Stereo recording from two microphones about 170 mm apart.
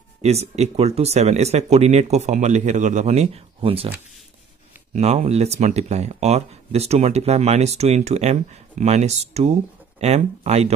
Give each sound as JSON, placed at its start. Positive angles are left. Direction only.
{"t": 0.2, "sound": "speech", "side_deg": -40}
{"t": 4.9, "sound": "speech", "side_deg": -40}